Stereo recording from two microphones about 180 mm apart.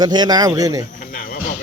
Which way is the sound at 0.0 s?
25° right (ahead or behind).